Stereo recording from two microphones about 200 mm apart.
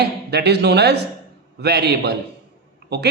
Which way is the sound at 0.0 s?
55° right (ahead or behind).